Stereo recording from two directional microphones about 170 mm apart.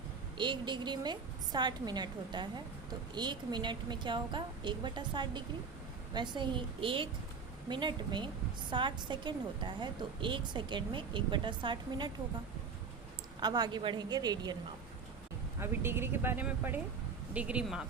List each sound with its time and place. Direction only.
0.3 s a woman's voice: 25° right (ahead or behind)
13.4 s a woman's voice: 25° right (ahead or behind)
15.6 s speech: 15° right (ahead or behind)